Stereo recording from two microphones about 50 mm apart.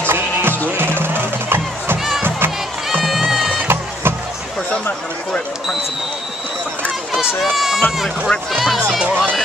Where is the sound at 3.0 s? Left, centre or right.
Centre.